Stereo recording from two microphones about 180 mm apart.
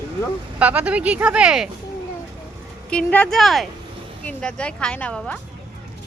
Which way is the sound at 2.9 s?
5° left (ahead or behind).